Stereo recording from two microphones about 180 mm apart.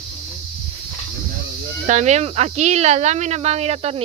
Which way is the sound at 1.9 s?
40° right (ahead or behind).